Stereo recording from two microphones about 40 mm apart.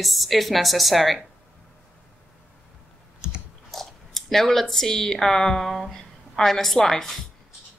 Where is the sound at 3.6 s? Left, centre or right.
Centre.